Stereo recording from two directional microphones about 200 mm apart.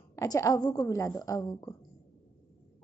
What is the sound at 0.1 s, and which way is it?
A woman's voice, 15° left (ahead or behind).